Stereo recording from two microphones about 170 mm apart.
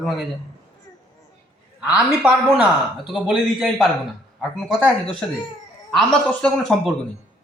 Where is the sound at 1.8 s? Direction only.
5° right (ahead or behind).